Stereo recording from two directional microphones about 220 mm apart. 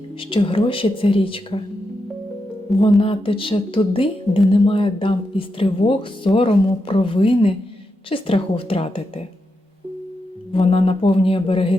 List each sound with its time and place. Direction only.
0.2 s speech: 25° left (ahead or behind)
3.0 s speech: 25° left (ahead or behind)
10.5 s speech: 25° left (ahead or behind)